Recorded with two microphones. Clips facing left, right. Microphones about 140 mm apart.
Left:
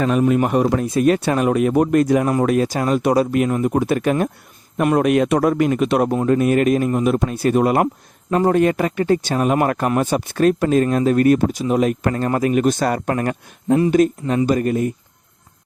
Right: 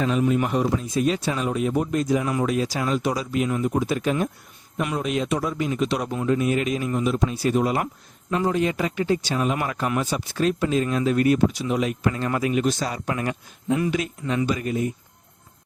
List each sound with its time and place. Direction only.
0.0 s speech: 55° left (ahead or behind)